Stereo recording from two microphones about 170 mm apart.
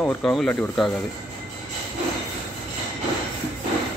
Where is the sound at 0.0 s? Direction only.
5° left (ahead or behind).